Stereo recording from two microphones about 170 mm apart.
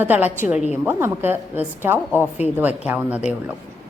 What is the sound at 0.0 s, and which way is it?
A woman's voice, 10° right (ahead or behind).